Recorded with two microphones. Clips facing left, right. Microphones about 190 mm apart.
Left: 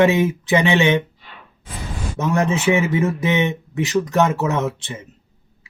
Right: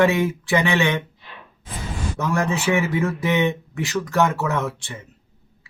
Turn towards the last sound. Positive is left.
turn(degrees=20)  # may be behind; listen again after turning